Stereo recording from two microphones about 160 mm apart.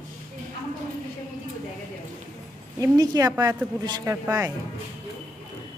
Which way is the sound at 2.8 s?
25° right (ahead or behind).